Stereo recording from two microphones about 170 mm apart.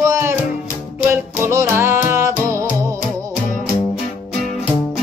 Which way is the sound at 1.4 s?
15° right (ahead or behind).